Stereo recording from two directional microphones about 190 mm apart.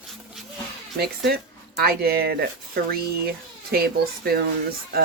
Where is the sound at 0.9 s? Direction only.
55° right (ahead or behind).